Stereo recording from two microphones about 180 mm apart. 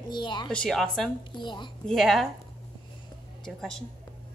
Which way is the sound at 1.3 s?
25° left (ahead or behind).